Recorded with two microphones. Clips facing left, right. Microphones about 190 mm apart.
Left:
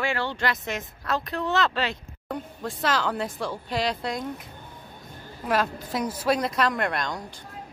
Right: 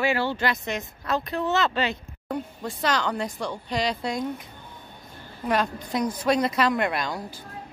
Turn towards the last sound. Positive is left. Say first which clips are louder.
# right 1 dB
turn(degrees=-5)  # may be behind; listen again after turning